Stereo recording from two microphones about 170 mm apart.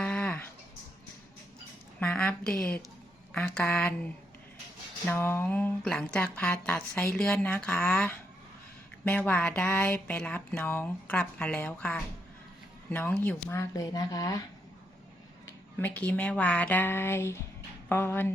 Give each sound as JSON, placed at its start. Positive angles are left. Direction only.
{"t": 0.0, "sound": "a sound", "side_deg": 5}
{"t": 2.0, "sound": "a woman's voice", "side_deg": 5}
{"t": 5.1, "sound": "speech", "side_deg": 10}
{"t": 15.8, "sound": "speech", "side_deg": 10}